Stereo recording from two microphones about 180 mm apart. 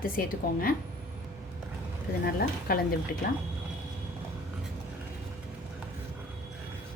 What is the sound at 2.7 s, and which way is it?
Speech, 55° left (ahead or behind).